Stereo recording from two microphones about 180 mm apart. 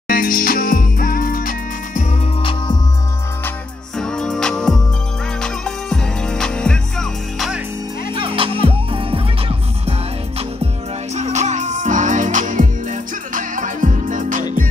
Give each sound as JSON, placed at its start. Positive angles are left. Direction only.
{"t": 0.1, "sound": "music", "side_deg": 50}
{"t": 4.0, "sound": "music", "side_deg": 5}
{"t": 8.1, "sound": "music", "side_deg": -30}
{"t": 11.1, "sound": "music", "side_deg": -40}